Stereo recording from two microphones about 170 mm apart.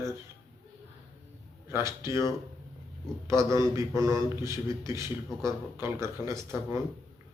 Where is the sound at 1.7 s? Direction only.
15° right (ahead or behind).